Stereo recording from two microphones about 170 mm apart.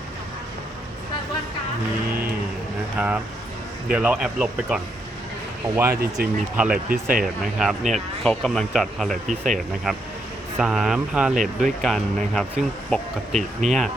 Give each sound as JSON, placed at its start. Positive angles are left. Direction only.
{"t": 3.8, "sound": "speech", "side_deg": -5}
{"t": 6.9, "sound": "speech", "side_deg": -55}
{"t": 7.4, "sound": "speech", "side_deg": 0}
{"t": 10.6, "sound": "speech", "side_deg": 0}